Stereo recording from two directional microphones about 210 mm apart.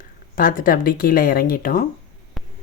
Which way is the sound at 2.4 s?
5° left (ahead or behind).